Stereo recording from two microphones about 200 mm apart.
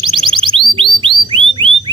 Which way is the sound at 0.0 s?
25° right (ahead or behind).